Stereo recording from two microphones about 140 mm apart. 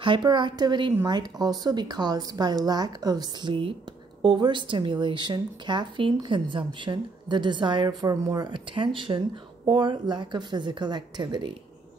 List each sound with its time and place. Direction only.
0.0 s a woman's voice: 35° right (ahead or behind)